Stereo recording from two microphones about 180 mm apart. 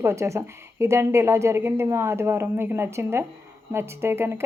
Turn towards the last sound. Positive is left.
turn(degrees=-15)  # may be behind; listen again after turning